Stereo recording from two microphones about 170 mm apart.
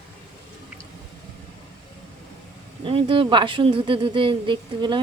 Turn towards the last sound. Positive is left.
turn(degrees=-30)  # may be behind; listen again after turning